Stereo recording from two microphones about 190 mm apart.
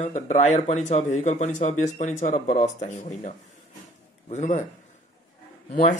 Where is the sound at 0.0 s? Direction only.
40° left (ahead or behind).